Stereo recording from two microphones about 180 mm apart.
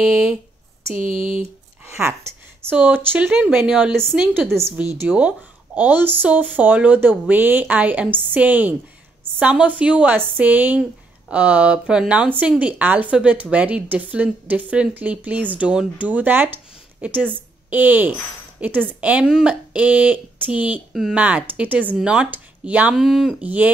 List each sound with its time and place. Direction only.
0.9 s speech: 45° right (ahead or behind)
2.7 s speech: 10° right (ahead or behind)